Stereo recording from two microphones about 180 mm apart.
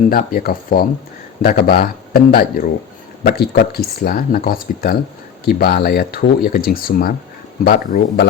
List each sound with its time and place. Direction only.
0.1 s speech: 55° left (ahead or behind)